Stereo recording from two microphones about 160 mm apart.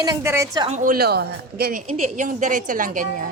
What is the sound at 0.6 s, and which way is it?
A woman's voice, 55° right (ahead or behind).